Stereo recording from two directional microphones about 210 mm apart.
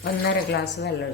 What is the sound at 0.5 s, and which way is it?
Speech, 50° left (ahead or behind).